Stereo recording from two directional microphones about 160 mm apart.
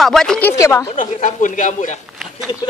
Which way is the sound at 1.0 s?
55° left (ahead or behind).